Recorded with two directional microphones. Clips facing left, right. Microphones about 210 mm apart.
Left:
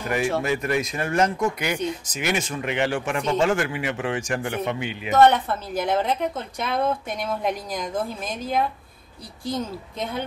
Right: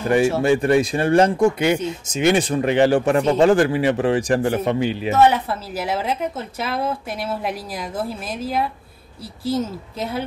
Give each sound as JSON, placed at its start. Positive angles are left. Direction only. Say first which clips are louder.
{"t": 0.4, "sound": "speech", "louder": "right 8 dB", "side_deg": -30}
{"t": 5.1, "sound": "a woman's voice", "louder": "left 1 dB", "side_deg": -5}